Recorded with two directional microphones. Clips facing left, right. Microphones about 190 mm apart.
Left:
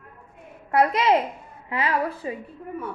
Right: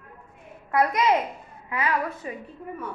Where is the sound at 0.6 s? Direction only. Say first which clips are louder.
Left 2 dB; 30° left (ahead or behind).